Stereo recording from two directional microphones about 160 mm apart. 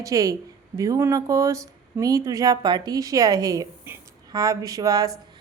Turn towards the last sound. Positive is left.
turn(degrees=-20)  # may be behind; listen again after turning